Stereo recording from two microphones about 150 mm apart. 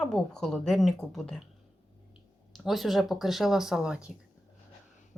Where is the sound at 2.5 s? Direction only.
Centre (ahead or behind).